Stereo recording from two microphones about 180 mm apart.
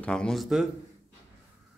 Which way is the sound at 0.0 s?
5° left (ahead or behind).